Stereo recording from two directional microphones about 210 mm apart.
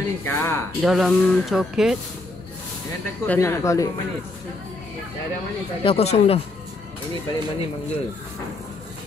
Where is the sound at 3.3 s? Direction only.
10° left (ahead or behind).